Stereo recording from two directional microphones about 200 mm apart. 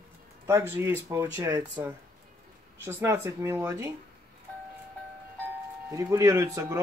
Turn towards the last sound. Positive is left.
turn(degrees=-15)  # may be behind; listen again after turning